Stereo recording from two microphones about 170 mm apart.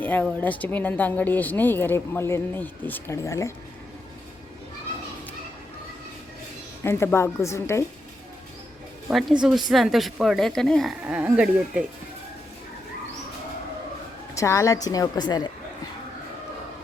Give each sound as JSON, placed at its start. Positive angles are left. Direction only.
{"t": 0.0, "sound": "speech", "side_deg": 10}
{"t": 6.8, "sound": "speech", "side_deg": 15}
{"t": 9.0, "sound": "a woman's voice", "side_deg": -5}
{"t": 11.0, "sound": "speech", "side_deg": -10}
{"t": 14.3, "sound": "a woman's voice", "side_deg": 15}